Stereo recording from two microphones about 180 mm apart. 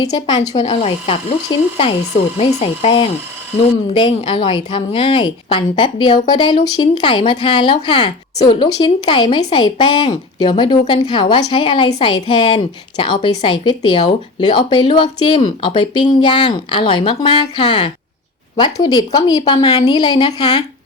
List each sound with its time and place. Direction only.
0.0 s speech: 25° left (ahead or behind)
2.4 s speech: 30° left (ahead or behind)